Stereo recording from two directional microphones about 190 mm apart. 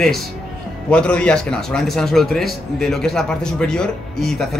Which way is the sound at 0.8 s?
5° left (ahead or behind).